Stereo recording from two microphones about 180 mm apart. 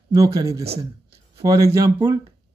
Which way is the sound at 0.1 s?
20° right (ahead or behind).